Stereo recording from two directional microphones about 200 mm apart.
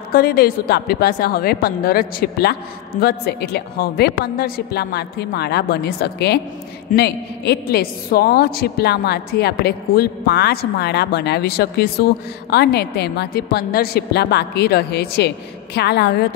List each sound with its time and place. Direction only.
0.1 s a woman's voice: 50° left (ahead or behind)